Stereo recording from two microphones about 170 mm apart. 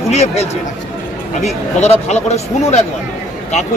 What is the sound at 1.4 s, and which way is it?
Speech, 40° left (ahead or behind).